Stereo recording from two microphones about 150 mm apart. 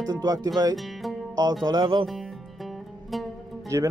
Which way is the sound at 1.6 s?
30° right (ahead or behind).